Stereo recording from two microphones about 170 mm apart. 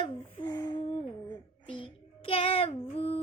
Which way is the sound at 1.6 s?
30° left (ahead or behind).